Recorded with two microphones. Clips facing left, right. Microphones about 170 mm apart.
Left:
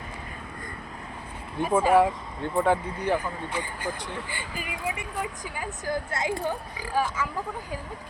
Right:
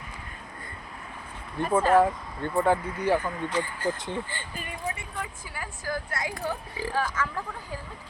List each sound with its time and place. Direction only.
1.5 s speech: 5° left (ahead or behind)
2.6 s speech: 5° right (ahead or behind)
3.2 s speech: 10° left (ahead or behind)
5.2 s speech: 20° left (ahead or behind)